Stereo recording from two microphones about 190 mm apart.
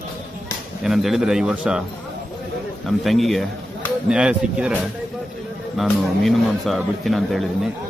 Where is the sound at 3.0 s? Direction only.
Centre (ahead or behind).